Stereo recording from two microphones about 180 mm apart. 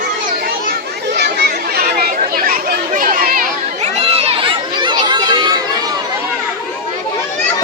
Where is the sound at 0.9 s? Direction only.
65° right (ahead or behind); by 6.0 s 20° right (ahead or behind).